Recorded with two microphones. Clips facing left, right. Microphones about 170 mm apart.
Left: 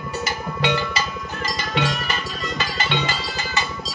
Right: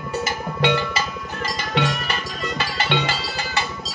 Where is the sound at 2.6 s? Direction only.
65° right (ahead or behind).